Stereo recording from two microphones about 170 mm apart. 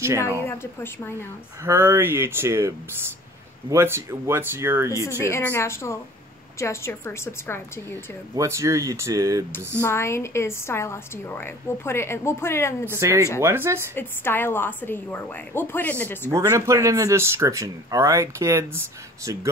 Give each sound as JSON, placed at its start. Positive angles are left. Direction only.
{"t": 0.0, "sound": "speech", "side_deg": -15}
{"t": 0.5, "sound": "a woman's voice", "side_deg": 15}
{"t": 1.6, "sound": "speech", "side_deg": -15}
{"t": 3.7, "sound": "speech", "side_deg": -15}
{"t": 5.2, "sound": "a woman's voice", "side_deg": 15}
{"t": 8.4, "sound": "speech", "side_deg": -20}
{"t": 9.8, "sound": "a woman's voice", "side_deg": 15}
{"t": 12.8, "sound": "speech", "side_deg": -15}
{"t": 13.9, "sound": "a woman's voice", "side_deg": 10}
{"t": 16.3, "sound": "speech", "side_deg": -20}